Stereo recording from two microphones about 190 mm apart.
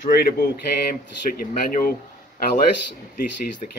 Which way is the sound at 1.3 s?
45° left (ahead or behind).